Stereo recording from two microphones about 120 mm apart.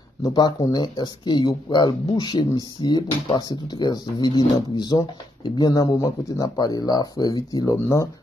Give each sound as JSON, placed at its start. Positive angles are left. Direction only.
{"t": 0.2, "sound": "speech", "side_deg": 35}